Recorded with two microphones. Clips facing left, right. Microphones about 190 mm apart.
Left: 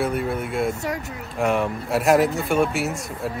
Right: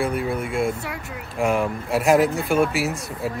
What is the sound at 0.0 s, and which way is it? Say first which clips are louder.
Speech: even; centre (ahead or behind).